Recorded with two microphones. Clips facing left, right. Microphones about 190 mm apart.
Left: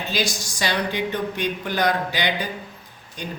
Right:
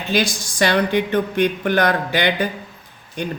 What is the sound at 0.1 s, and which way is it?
Speech, 55° right (ahead or behind).